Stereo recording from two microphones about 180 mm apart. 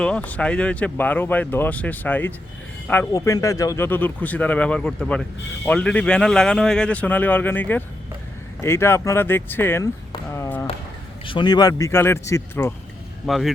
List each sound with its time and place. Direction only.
0.0 s speech: 5° left (ahead or behind)
10.3 s a sound: 15° left (ahead or behind)
11.3 s speech: 25° left (ahead or behind)
13.2 s speech: centre (ahead or behind)